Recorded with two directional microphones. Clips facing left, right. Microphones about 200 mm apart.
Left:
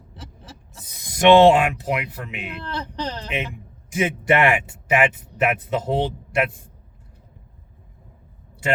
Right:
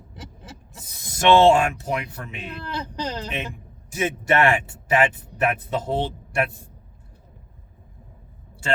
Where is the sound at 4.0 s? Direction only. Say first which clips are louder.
Left 1 dB; 20° left (ahead or behind).